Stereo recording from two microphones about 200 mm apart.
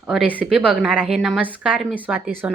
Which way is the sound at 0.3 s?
5° right (ahead or behind).